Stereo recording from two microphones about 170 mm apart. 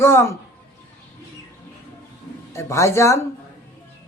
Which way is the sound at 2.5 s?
15° left (ahead or behind).